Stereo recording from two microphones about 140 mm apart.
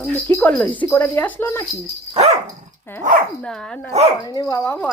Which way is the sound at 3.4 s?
5° left (ahead or behind).